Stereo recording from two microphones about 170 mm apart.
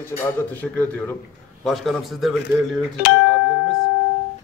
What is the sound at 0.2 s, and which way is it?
A man's voice, 10° left (ahead or behind).